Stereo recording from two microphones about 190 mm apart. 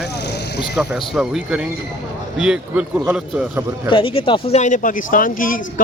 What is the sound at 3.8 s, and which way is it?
Speech, 25° left (ahead or behind).